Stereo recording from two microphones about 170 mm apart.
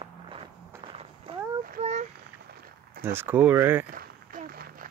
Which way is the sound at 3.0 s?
10° right (ahead or behind).